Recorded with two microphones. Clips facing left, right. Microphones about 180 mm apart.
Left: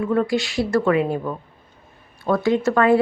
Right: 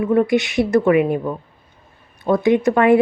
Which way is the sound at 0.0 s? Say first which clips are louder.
Right 4 dB; 20° right (ahead or behind).